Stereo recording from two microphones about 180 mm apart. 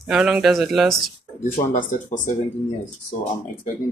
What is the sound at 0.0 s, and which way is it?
Speech, 5° right (ahead or behind).